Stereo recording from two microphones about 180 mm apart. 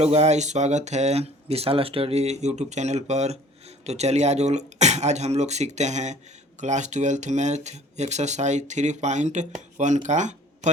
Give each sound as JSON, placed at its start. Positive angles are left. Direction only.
{"t": 0.0, "sound": "speech", "side_deg": -35}